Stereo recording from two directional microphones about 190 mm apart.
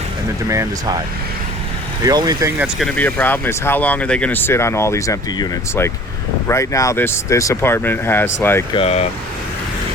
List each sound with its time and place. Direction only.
0.4 s speech: 15° right (ahead or behind)
2.0 s speech: 20° right (ahead or behind)
2.6 s speech: centre (ahead or behind)
8.7 s speech: 30° left (ahead or behind)